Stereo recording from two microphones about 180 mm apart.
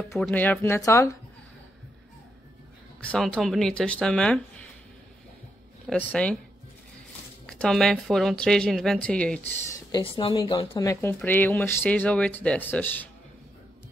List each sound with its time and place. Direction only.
0.2 s speech: 10° left (ahead or behind)
3.0 s speech: 5° left (ahead or behind)
5.9 s speech: 5° left (ahead or behind)
7.4 s speech: 5° left (ahead or behind)
9.7 s speech: 20° left (ahead or behind)
10.9 s speech: 15° left (ahead or behind)